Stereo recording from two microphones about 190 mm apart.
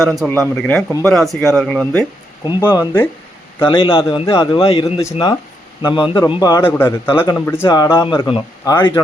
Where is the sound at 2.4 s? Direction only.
25° left (ahead or behind).